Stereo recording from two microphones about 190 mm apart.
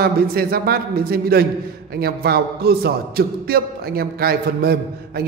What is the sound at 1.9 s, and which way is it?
A man's voice, 55° right (ahead or behind).